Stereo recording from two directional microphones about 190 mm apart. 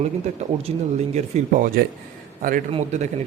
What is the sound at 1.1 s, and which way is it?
Speech, 45° right (ahead or behind).